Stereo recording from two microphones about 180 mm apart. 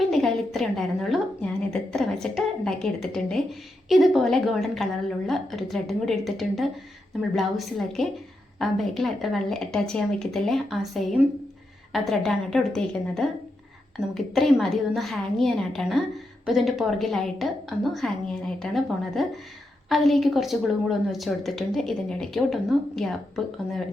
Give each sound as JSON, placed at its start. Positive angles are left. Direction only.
{"t": 0.0, "sound": "a woman's voice", "side_deg": 0}